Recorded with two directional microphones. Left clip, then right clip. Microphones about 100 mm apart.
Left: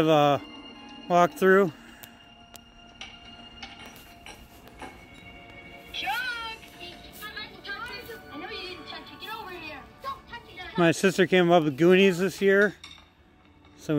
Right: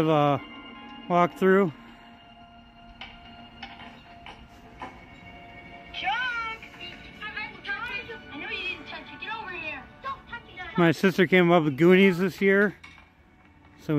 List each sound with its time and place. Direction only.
0.0 s speech: 25° right (ahead or behind)
0.4 s music: 25° left (ahead or behind)
1.0 s speech: 25° right (ahead or behind)
3.6 s mechanisms: 25° left (ahead or behind)
5.9 s music: 15° left (ahead or behind)
8.1 s music: 5° left (ahead or behind)
10.8 s speech: 30° right (ahead or behind)
13.9 s speech: 30° right (ahead or behind)